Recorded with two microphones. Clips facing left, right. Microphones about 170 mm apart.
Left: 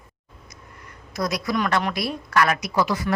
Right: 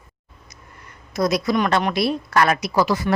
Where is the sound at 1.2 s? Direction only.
25° right (ahead or behind).